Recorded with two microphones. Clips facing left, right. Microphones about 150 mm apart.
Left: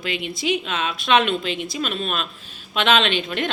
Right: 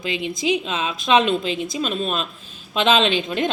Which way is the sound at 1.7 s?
25° right (ahead or behind).